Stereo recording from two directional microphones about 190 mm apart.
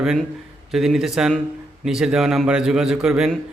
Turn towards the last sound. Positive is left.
turn(degrees=-5)  # may be behind; listen again after turning